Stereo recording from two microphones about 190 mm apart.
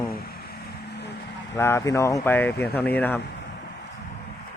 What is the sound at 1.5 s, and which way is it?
Speech, 15° left (ahead or behind).